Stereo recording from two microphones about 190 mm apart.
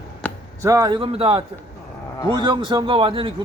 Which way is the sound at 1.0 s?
30° right (ahead or behind).